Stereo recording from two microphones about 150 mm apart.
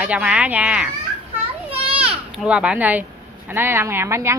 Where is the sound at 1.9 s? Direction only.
5° right (ahead or behind).